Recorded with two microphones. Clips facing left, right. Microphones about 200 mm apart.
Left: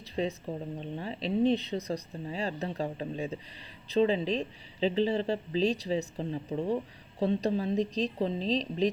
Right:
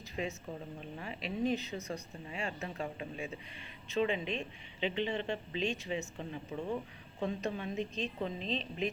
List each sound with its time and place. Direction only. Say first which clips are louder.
0.0 s speech: left 7 dB; 35° left (ahead or behind)